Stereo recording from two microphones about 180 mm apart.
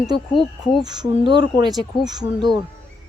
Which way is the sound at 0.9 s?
25° right (ahead or behind).